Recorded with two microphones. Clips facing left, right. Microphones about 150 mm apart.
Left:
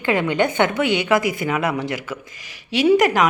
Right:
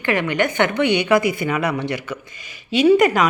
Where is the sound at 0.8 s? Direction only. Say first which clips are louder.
Right 2 dB; 90° left.